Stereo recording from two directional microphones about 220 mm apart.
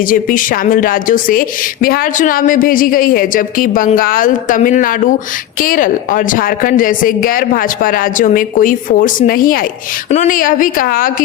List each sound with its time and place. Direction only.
0.1 s a woman's voice: 40° left (ahead or behind)